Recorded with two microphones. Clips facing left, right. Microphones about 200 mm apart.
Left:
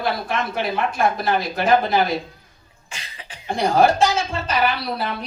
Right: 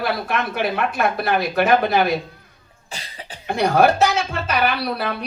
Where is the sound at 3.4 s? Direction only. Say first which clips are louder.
Right 1 dB; 65° right (ahead or behind).